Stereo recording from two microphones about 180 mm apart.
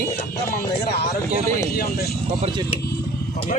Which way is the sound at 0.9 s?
65° left (ahead or behind).